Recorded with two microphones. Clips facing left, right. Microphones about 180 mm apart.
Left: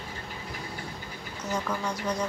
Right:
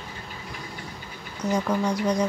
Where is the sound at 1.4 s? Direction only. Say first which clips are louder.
Right 7 dB; 30° right (ahead or behind).